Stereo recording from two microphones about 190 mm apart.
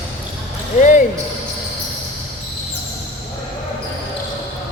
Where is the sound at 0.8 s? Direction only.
40° left (ahead or behind).